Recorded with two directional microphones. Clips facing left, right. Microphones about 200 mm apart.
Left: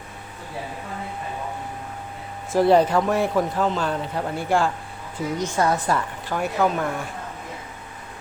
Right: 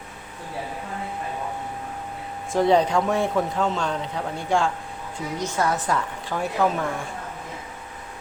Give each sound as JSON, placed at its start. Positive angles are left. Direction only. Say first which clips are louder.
{"t": 2.5, "sound": "speech", "louder": "left 2 dB", "side_deg": 5}